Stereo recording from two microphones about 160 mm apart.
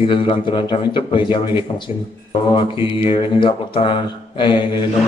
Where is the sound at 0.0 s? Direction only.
35° left (ahead or behind).